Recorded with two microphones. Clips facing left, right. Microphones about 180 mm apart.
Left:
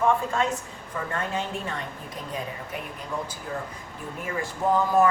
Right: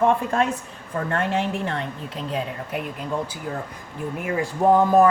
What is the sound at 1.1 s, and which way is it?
Speech, 80° right.